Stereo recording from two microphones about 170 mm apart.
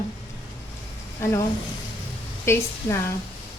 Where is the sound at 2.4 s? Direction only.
15° left (ahead or behind).